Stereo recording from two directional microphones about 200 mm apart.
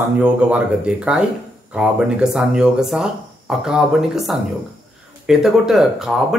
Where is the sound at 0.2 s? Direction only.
5° right (ahead or behind).